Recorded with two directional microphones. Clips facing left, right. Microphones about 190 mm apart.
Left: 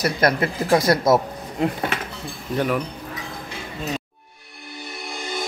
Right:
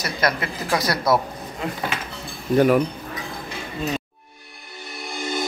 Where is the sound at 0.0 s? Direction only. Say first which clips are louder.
Left 4 dB; 55° left (ahead or behind).